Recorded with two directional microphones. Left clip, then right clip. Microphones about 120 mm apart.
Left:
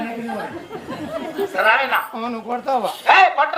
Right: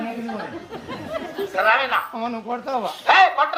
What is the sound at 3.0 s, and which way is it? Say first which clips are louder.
Speech: left 2 dB; 30° right (ahead or behind).